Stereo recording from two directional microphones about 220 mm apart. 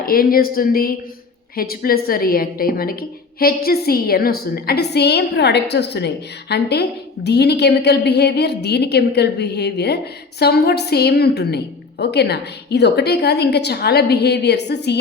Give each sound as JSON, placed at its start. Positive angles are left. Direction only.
{"t": 0.0, "sound": "a woman's voice", "side_deg": 40}